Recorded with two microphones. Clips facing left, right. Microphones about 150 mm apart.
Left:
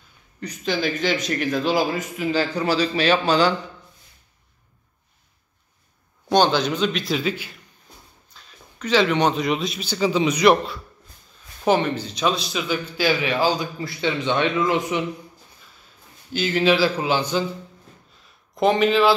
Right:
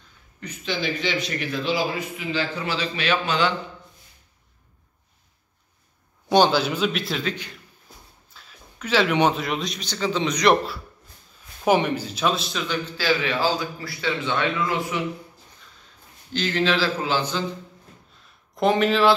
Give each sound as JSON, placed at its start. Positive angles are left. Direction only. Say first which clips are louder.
{"t": 0.4, "sound": "a man's voice", "louder": "left 4 dB", "side_deg": 40}
{"t": 6.2, "sound": "a man's voice", "louder": "even", "side_deg": -5}
{"t": 8.3, "sound": "a man's voice", "louder": "left 1 dB", "side_deg": -5}
{"t": 11.6, "sound": "a man's voice", "louder": "even", "side_deg": -10}
{"t": 16.3, "sound": "a man's voice", "louder": "left 4 dB", "side_deg": 10}
{"t": 18.6, "sound": "a man's voice", "louder": "left 2 dB", "side_deg": 0}